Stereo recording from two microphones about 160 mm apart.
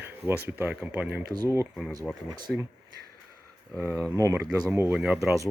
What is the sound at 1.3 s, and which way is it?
Speech, 20° right (ahead or behind).